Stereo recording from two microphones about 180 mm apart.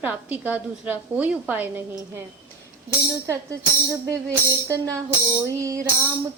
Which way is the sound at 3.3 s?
15° right (ahead or behind).